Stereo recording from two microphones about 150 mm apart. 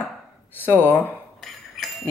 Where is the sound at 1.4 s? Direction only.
Centre (ahead or behind).